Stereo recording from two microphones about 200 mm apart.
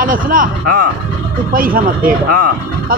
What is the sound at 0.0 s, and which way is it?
Speech, 45° right (ahead or behind).